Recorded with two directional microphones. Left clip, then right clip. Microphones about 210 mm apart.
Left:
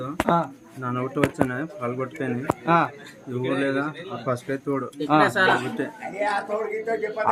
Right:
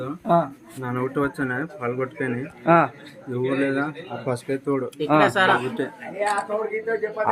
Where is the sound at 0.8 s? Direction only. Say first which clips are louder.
Even; 5° left (ahead or behind).